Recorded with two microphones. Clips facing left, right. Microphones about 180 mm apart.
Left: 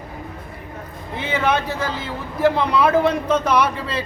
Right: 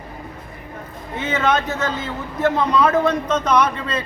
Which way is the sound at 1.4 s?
10° left (ahead or behind).